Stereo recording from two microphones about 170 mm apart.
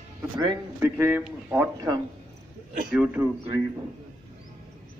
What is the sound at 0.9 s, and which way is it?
Speech, 10° right (ahead or behind).